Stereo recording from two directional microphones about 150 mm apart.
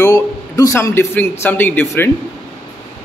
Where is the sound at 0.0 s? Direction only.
20° left (ahead or behind).